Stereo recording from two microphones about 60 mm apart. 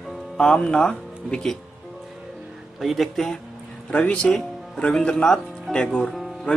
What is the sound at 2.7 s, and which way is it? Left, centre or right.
Speech, centre.